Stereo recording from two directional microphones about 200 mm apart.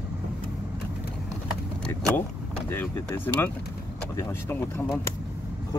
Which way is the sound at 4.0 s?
10° left (ahead or behind).